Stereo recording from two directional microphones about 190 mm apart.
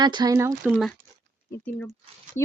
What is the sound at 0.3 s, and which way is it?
Speech, 10° right (ahead or behind).